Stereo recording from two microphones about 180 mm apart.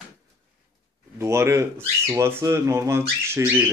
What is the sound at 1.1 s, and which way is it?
Speech, 15° right (ahead or behind).